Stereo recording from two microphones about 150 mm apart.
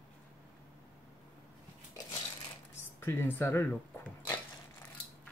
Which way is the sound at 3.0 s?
15° left (ahead or behind).